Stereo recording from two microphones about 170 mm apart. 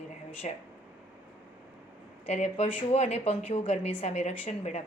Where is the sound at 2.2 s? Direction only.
40° left (ahead or behind).